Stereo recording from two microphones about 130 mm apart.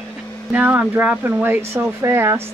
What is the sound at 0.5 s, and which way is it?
Speech, 10° right (ahead or behind).